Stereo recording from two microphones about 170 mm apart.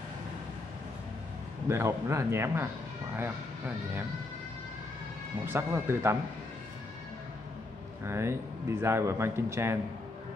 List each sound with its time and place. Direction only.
1.7 s speech: 15° right (ahead or behind)
5.5 s speech: 15° right (ahead or behind)
8.0 s speech: 15° right (ahead or behind)